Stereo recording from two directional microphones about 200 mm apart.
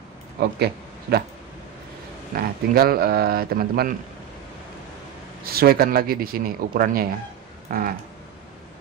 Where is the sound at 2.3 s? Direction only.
50° right (ahead or behind).